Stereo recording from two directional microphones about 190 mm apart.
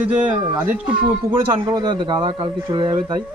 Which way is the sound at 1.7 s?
20° right (ahead or behind).